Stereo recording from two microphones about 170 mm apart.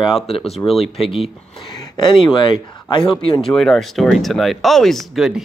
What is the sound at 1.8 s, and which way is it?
Speech, 25° left (ahead or behind).